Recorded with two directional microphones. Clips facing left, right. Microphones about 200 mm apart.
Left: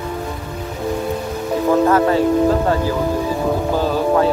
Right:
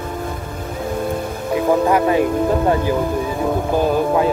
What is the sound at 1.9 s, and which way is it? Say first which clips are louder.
Music: left 1 dB; 15° right (ahead or behind).